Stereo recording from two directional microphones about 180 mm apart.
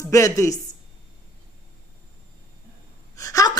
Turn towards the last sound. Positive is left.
turn(degrees=20)  # may be behind; listen again after turning